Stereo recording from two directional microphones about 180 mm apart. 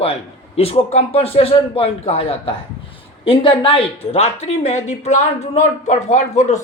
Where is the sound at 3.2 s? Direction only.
30° left (ahead or behind).